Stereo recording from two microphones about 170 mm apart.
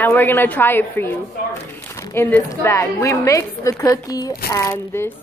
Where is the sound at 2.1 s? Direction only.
15° left (ahead or behind).